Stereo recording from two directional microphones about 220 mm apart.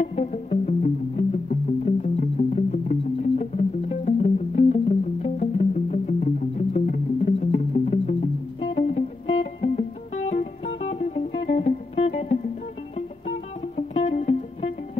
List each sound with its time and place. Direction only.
0.0 s music: 30° left (ahead or behind)
13.7 s music: 30° left (ahead or behind)